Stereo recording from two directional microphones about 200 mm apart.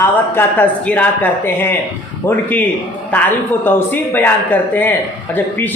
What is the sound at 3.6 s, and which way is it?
Speech, 10° left (ahead or behind).